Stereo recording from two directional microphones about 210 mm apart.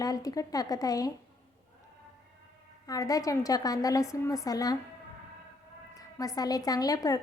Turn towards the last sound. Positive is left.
turn(degrees=15)  # may be behind; listen again after turning